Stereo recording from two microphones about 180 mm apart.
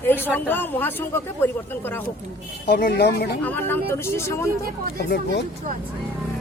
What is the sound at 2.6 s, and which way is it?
Speech, 65° left (ahead or behind).